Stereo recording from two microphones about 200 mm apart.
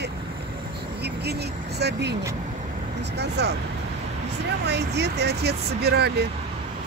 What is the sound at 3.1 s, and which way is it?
Speech, 55° right (ahead or behind).